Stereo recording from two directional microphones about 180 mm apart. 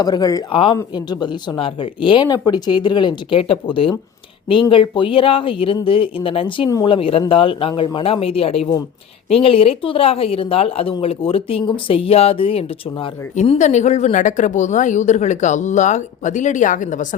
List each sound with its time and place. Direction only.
0.0 s speech: 20° left (ahead or behind); by 17.2 s 45° left (ahead or behind)